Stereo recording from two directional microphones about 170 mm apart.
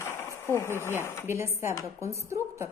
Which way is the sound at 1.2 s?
15° right (ahead or behind).